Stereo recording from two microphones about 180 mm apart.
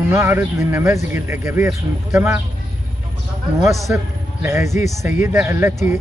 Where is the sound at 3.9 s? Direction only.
15° right (ahead or behind).